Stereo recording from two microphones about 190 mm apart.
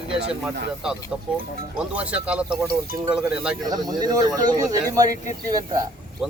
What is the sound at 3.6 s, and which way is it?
Speech, 20° right (ahead or behind).